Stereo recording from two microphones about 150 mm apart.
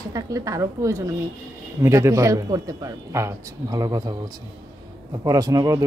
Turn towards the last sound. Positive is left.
turn(degrees=-25)  # may be behind; listen again after turning